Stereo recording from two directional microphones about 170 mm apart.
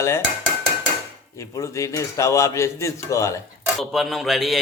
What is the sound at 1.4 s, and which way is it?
A man's voice, 20° left (ahead or behind).